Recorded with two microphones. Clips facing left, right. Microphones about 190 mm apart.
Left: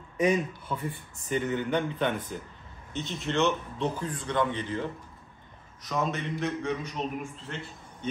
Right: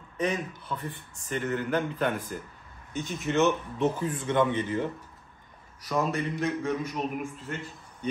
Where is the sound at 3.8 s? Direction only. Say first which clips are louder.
Right 4 dB; 20° right (ahead or behind).